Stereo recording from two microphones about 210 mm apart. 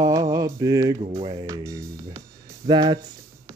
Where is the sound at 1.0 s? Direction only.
25° right (ahead or behind).